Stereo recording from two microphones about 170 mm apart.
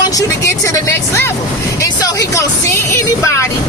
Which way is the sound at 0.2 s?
15° left (ahead or behind).